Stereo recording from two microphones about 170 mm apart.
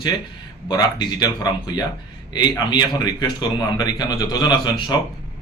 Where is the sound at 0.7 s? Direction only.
25° left (ahead or behind).